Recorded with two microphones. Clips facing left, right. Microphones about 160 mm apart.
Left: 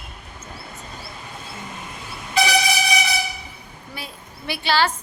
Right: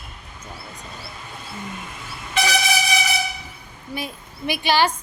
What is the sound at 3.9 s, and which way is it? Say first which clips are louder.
A woman's voice: right 7 dB; 15° right (ahead or behind).